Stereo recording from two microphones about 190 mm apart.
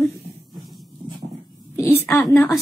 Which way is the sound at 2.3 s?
10° left (ahead or behind).